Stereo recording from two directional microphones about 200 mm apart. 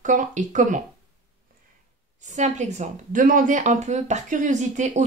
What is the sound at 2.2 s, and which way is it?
Speech, 35° right (ahead or behind).